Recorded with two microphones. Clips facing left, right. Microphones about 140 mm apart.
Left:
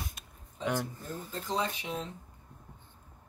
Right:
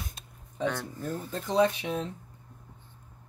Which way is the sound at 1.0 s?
70° right (ahead or behind).